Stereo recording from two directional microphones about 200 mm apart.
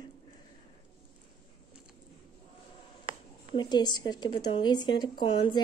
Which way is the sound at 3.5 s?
20° left (ahead or behind).